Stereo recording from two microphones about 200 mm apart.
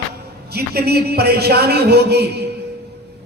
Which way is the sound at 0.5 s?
50° right (ahead or behind).